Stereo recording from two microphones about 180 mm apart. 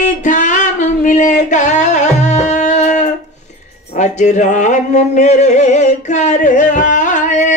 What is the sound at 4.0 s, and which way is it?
Music, 40° left (ahead or behind).